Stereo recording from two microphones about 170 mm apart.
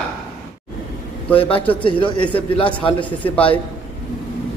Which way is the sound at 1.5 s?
10° left (ahead or behind).